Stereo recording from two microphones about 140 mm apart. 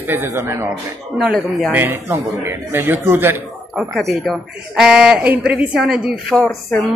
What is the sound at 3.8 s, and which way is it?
A woman's voice, centre (ahead or behind).